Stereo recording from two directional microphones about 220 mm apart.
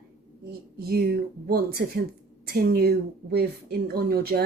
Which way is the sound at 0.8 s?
45° right (ahead or behind).